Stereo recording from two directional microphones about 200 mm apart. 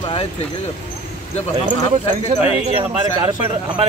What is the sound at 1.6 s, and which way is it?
Speech, 40° right (ahead or behind).